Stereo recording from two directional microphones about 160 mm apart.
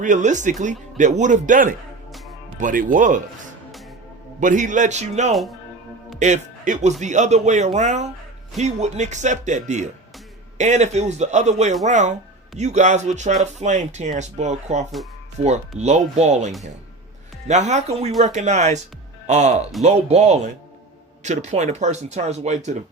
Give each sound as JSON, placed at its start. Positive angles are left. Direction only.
{"t": 0.0, "sound": "speech", "side_deg": -50}
{"t": 4.4, "sound": "speech", "side_deg": -50}
{"t": 5.3, "sound": "speech", "side_deg": 0}
{"t": 6.1, "sound": "speech", "side_deg": -50}
{"t": 17.5, "sound": "speech", "side_deg": -45}